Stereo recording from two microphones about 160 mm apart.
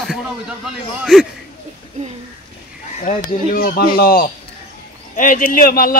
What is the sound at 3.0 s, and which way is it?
Speech, 55° left (ahead or behind).